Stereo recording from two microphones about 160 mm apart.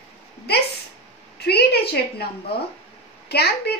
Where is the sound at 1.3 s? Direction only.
85° left.